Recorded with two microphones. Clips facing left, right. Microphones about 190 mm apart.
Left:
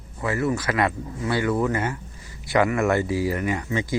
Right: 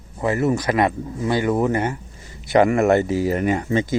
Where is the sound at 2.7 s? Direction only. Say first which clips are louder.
Right 5 dB; 35° right (ahead or behind).